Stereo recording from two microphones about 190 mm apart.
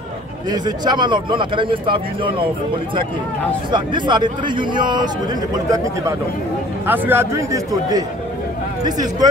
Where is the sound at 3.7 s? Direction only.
25° right (ahead or behind).